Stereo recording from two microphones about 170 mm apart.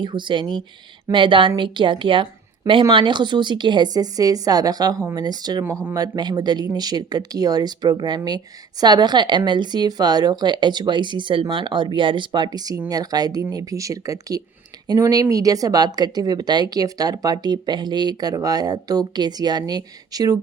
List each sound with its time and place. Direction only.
0.0 s speech: 25° right (ahead or behind)